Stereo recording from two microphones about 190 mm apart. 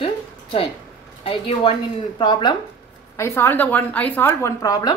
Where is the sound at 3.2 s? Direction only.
15° left (ahead or behind).